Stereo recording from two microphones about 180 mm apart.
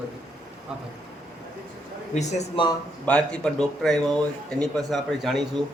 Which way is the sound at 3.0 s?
5° left (ahead or behind).